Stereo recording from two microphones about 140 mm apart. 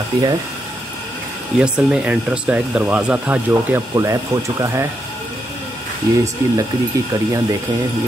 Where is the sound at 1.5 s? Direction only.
5° right (ahead or behind).